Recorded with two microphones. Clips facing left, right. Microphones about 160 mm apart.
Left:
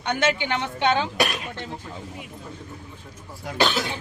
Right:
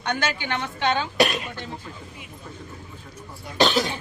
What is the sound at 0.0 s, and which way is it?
Speech, 25° left (ahead or behind).